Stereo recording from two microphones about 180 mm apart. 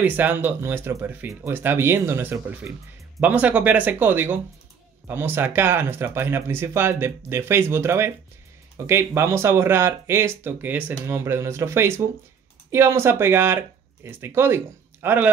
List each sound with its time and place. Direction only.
0.0 s speech: 10° right (ahead or behind)